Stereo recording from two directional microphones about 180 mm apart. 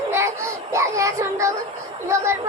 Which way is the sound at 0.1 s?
15° right (ahead or behind).